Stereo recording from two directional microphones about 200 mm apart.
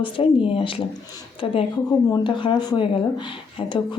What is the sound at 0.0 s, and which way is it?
Speech, 25° left (ahead or behind).